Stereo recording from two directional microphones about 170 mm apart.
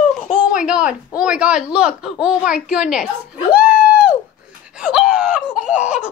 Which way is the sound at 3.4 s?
5° right (ahead or behind).